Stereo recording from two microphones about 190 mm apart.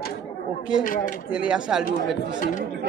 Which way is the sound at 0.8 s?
45° left (ahead or behind).